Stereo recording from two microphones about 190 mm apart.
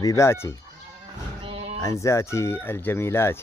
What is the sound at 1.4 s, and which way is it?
Music, 30° right (ahead or behind).